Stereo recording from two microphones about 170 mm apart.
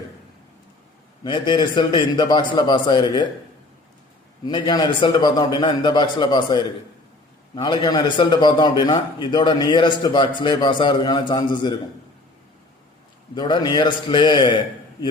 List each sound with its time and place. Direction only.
1.2 s a man's voice: 25° left (ahead or behind)
4.4 s a man's voice: 25° left (ahead or behind)
13.3 s a man's voice: 25° left (ahead or behind)